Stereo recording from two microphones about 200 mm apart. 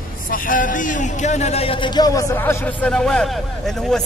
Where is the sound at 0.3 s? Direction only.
40° left (ahead or behind).